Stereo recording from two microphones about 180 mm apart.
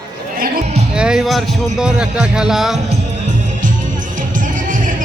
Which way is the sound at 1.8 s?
5° right (ahead or behind).